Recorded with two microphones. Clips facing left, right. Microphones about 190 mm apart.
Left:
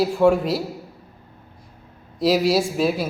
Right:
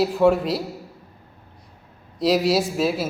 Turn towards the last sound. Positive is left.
turn(degrees=0)  # may be behind; listen again after turning